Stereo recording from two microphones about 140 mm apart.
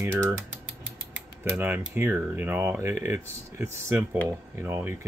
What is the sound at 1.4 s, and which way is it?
Speech, 15° right (ahead or behind).